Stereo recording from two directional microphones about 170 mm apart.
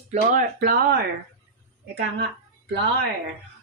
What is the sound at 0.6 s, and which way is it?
Speech, 60° right (ahead or behind).